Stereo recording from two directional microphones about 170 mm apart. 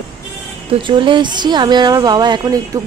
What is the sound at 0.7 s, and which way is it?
A woman's voice, 30° right (ahead or behind).